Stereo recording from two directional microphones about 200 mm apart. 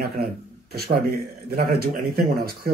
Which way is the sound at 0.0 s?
50° right (ahead or behind).